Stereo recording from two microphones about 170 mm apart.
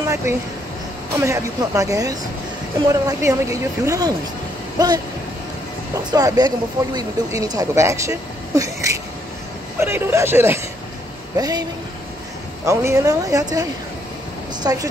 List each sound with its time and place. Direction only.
0.1 s speech: 15° right (ahead or behind)
6.0 s speech: 25° right (ahead or behind)
12.6 s speech: 15° right (ahead or behind)